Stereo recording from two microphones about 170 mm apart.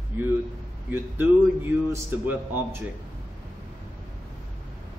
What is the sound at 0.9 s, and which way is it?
A man's voice, 10° right (ahead or behind).